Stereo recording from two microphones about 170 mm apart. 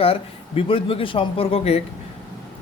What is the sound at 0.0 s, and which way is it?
Speech, 35° left (ahead or behind).